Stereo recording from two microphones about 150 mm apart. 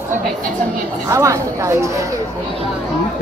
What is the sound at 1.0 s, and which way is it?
Speech, 20° right (ahead or behind).